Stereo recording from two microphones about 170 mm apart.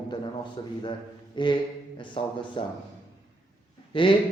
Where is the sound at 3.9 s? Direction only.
30° left (ahead or behind).